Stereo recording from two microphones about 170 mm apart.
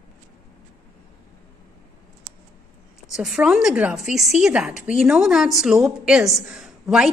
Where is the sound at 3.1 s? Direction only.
5° right (ahead or behind).